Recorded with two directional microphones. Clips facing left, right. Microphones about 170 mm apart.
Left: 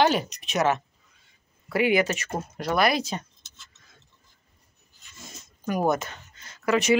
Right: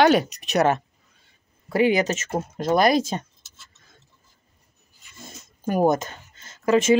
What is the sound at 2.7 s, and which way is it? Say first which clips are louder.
Speech: right 5 dB; 45° right (ahead or behind).